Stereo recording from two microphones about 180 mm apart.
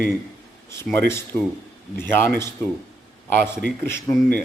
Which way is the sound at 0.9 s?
15° left (ahead or behind).